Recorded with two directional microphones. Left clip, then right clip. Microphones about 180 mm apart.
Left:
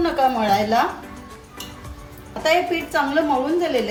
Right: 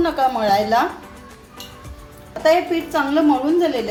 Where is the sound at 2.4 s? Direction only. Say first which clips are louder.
Right 3 dB; 25° right (ahead or behind).